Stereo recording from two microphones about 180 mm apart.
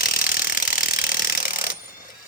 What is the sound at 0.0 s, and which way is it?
Tools, 55° left (ahead or behind).